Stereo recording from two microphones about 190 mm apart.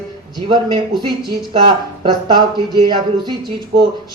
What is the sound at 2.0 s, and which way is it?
Speech, 25° right (ahead or behind).